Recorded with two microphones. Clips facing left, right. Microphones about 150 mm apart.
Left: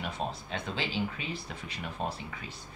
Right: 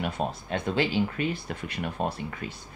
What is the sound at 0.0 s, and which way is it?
Speech, 55° right (ahead or behind).